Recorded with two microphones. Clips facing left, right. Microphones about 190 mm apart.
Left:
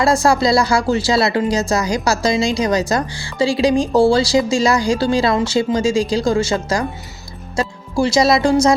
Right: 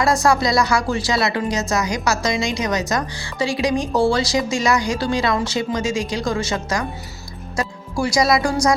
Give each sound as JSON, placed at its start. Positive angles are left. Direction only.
{"t": 0.0, "sound": "speech", "side_deg": 30}